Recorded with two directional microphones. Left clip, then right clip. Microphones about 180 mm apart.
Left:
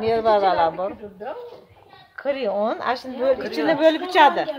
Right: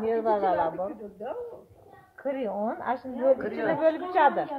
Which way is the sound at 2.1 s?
50° left (ahead or behind).